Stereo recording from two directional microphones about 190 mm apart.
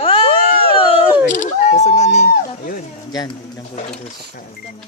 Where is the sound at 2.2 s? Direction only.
50° left (ahead or behind).